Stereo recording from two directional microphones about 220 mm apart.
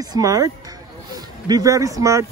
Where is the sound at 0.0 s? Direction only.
15° right (ahead or behind).